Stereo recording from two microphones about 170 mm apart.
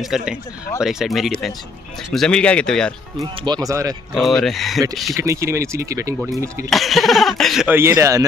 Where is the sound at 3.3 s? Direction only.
25° right (ahead or behind).